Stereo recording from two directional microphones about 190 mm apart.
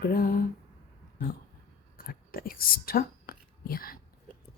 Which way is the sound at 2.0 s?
50° left (ahead or behind).